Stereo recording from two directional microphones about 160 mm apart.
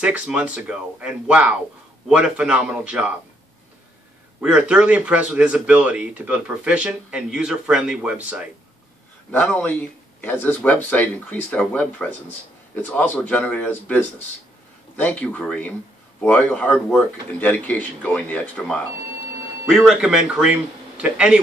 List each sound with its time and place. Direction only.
0.0 s speech: 5° right (ahead or behind)
4.4 s speech: 5° right (ahead or behind)
9.3 s speech: 10° left (ahead or behind)
19.7 s speech: 5° right (ahead or behind)